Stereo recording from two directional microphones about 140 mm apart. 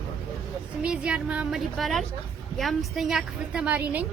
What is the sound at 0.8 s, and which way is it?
A woman's voice, 10° right (ahead or behind).